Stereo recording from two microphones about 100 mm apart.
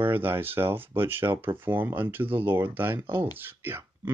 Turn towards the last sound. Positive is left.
turn(degrees=-20)  # may be behind; listen again after turning